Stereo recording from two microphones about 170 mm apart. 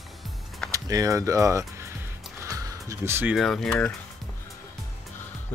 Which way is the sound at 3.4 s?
Centre (ahead or behind).